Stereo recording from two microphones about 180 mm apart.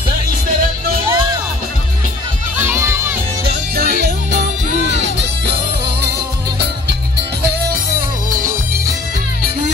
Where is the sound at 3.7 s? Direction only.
60° right (ahead or behind).